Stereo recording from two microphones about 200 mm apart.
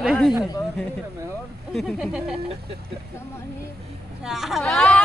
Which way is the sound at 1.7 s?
Centre (ahead or behind).